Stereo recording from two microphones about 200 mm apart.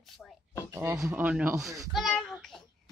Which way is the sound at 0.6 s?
15° right (ahead or behind).